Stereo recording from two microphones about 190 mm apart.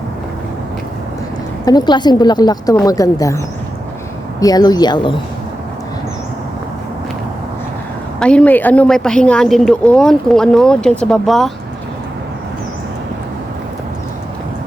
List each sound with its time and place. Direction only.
1.6 s a woman's voice: 20° left (ahead or behind)
8.2 s a woman's voice: 5° left (ahead or behind)